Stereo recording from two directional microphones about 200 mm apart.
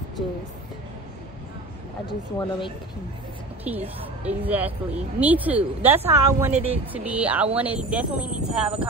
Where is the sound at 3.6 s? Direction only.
10° right (ahead or behind).